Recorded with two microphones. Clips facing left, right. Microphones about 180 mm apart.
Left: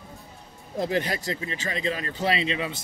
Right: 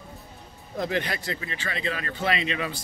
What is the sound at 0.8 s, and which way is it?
Speech, 35° left (ahead or behind).